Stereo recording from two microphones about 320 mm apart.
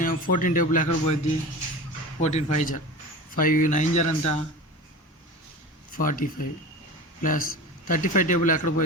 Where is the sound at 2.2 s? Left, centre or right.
Left.